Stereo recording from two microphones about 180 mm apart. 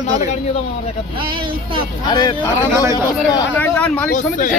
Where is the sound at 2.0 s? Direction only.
25° left (ahead or behind).